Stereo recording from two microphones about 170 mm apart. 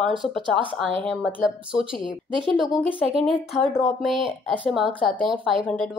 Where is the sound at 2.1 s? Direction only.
30° right (ahead or behind).